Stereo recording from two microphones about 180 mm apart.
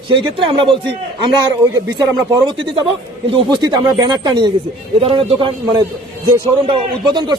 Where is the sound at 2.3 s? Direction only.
25° right (ahead or behind).